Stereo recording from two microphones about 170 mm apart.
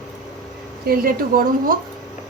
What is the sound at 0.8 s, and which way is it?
Speech, 60° right (ahead or behind).